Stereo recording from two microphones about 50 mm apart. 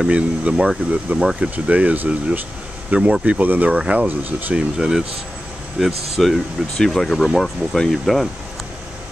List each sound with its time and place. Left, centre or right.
0.0 s speech: right
0.6 s speech: centre
4.1 s speech: right
4.6 s speech: centre